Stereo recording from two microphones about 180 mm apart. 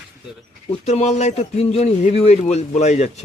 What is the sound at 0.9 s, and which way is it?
A man's voice, 40° left (ahead or behind).